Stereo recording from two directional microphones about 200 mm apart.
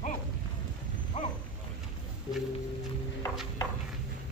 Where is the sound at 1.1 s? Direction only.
40° left (ahead or behind).